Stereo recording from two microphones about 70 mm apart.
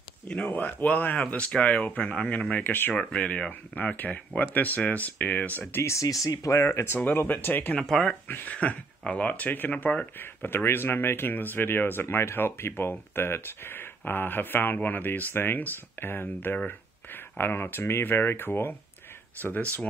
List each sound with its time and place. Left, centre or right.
0.5 s speech: left
2.9 s speech: centre
5.7 s speech: left
5.9 s speech: left
6.6 s speech: left
7.1 s speech: left
7.8 s speech: centre
8.3 s speech: left